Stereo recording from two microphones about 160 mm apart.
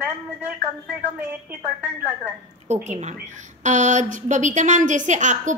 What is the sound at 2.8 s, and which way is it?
A woman's voice, 45° right (ahead or behind).